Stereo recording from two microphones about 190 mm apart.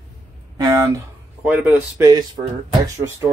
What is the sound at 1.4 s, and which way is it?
Speech, 10° right (ahead or behind).